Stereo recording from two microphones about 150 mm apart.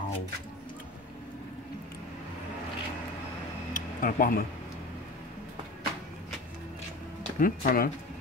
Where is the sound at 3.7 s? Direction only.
70° left (ahead or behind).